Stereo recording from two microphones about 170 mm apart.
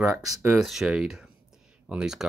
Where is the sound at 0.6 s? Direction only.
Centre (ahead or behind).